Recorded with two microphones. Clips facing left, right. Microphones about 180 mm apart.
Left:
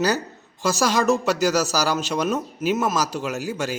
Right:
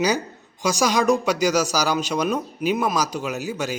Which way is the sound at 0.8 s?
10° right (ahead or behind).